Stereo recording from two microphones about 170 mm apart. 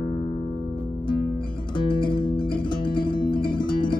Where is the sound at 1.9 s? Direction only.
30° left (ahead or behind).